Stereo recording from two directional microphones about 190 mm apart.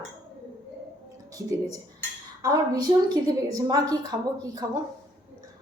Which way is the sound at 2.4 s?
20° right (ahead or behind).